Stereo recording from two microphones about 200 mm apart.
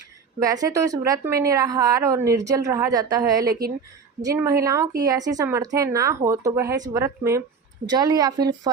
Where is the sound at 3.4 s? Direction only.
50° right (ahead or behind).